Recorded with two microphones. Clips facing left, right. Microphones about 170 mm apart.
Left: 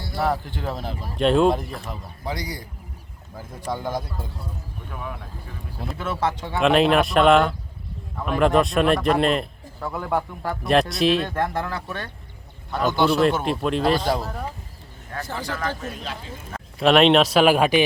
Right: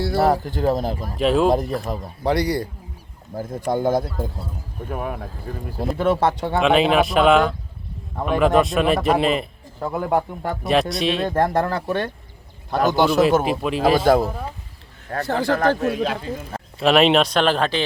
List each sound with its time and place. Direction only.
0.2 s speech: 40° right (ahead or behind)
1.1 s speech: centre (ahead or behind)
1.9 s speech: 40° right (ahead or behind)
2.2 s speech: 70° right (ahead or behind)
3.3 s speech: 45° right (ahead or behind)
6.6 s speech: centre (ahead or behind)
9.8 s a man's voice: 25° right (ahead or behind)
10.7 s speech: centre (ahead or behind)
11.3 s speech: 40° right (ahead or behind)
13.1 s speech: 5° right (ahead or behind)
14.0 s speech: 50° right (ahead or behind)
15.1 s speech: 65° right (ahead or behind)
16.8 s speech: centre (ahead or behind)